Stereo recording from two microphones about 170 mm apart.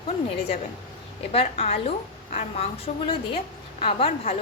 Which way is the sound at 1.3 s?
35° left (ahead or behind).